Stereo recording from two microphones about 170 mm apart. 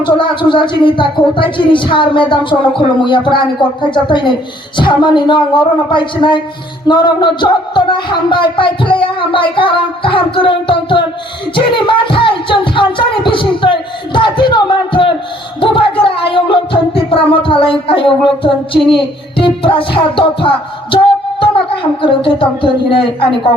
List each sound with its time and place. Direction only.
0.0 s speech: 30° left (ahead or behind)
11.5 s music: 30° left (ahead or behind)
15.6 s speech: 30° left (ahead or behind)
19.4 s music: 30° left (ahead or behind)
22.0 s speech: 30° left (ahead or behind)